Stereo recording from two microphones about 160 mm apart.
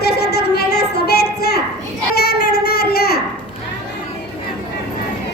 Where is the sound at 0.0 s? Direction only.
85° left.